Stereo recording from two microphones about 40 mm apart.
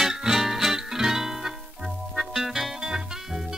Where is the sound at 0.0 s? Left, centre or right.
Centre.